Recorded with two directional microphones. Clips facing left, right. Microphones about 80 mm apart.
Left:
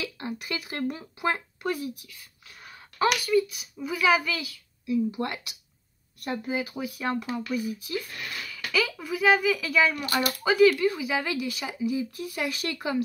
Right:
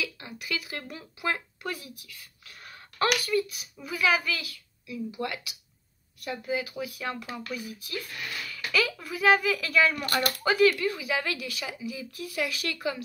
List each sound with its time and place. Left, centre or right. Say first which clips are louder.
0.0 s speech: left 3 dB; left
2.6 s speech: left 3 dB; centre
5.1 s speech: left 2 dB; left
8.5 s speech: even; centre; by 12.7 s left